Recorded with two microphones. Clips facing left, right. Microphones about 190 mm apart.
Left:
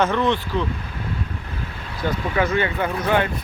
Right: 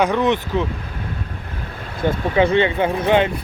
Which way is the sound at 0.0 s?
15° right (ahead or behind).